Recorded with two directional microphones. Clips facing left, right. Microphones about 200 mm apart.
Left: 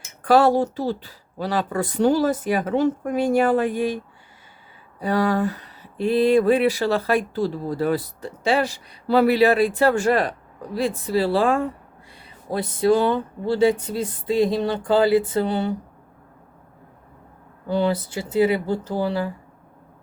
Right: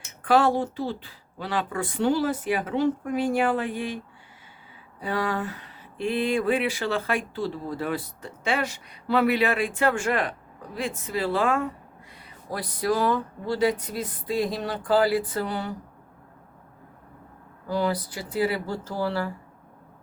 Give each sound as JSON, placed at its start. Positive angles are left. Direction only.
{"t": 0.2, "sound": "speech", "side_deg": 40}
{"t": 4.9, "sound": "speech", "side_deg": 40}
{"t": 17.7, "sound": "speech", "side_deg": 25}